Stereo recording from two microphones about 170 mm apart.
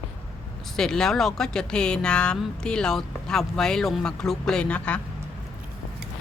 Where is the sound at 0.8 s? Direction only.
5° left (ahead or behind).